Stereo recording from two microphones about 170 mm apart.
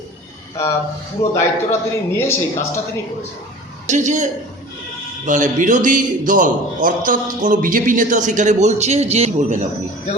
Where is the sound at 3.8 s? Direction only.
45° right (ahead or behind).